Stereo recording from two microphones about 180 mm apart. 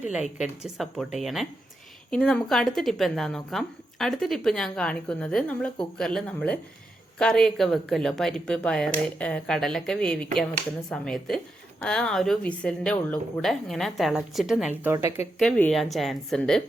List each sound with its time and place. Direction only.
0.0 s a woman's voice: 5° right (ahead or behind)
14.8 s a woman's voice: 15° right (ahead or behind)
15.4 s a woman's voice: 5° left (ahead or behind)